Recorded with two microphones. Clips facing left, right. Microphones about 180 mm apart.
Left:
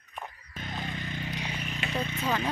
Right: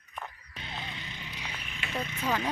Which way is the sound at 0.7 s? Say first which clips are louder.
Left 6 dB; 50° left (ahead or behind).